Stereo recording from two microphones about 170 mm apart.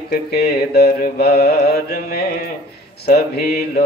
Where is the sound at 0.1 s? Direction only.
70° left (ahead or behind).